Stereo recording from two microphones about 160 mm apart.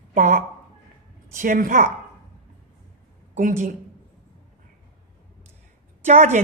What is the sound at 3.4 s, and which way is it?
Speech, 50° right (ahead or behind).